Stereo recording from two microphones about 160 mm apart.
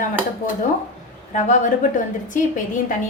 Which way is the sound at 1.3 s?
50° left (ahead or behind).